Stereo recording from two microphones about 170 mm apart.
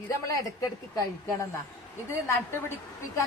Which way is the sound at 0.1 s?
20° left (ahead or behind).